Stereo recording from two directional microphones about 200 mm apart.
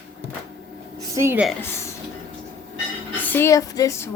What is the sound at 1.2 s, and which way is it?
Speech, 10° right (ahead or behind).